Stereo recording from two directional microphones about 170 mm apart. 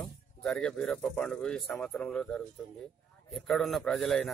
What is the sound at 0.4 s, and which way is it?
Speech, 5° left (ahead or behind).